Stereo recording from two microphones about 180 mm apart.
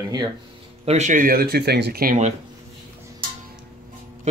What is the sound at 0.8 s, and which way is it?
Speech, 40° right (ahead or behind).